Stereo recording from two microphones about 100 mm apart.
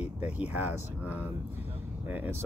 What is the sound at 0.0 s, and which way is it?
Speech, 15° right (ahead or behind).